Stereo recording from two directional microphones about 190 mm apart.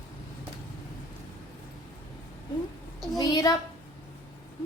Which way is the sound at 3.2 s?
20° left (ahead or behind).